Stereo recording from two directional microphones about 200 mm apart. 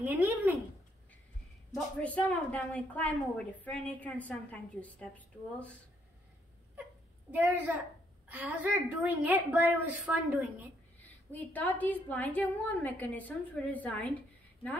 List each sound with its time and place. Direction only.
0.0 s speech: 10° right (ahead or behind)
1.7 s a woman's voice: 5° left (ahead or behind)
7.2 s a woman's voice: 10° right (ahead or behind)
11.0 s a woman's voice: 10° left (ahead or behind)